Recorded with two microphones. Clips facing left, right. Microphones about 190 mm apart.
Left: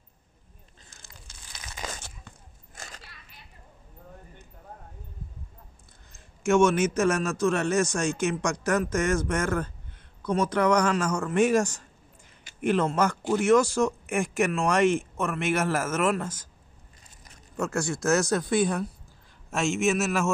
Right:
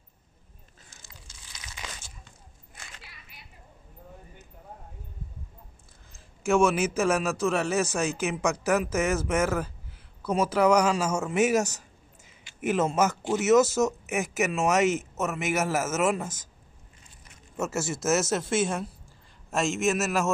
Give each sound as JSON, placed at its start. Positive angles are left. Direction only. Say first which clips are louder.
{"t": 0.8, "sound": "a sound", "louder": "even", "side_deg": 55}
{"t": 6.1, "sound": "a man's voice", "louder": "left 2 dB", "side_deg": 0}
{"t": 17.6, "sound": "a man's voice", "louder": "left 1 dB", "side_deg": -5}